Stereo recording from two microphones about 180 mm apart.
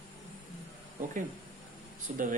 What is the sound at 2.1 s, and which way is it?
Speech, 45° right (ahead or behind).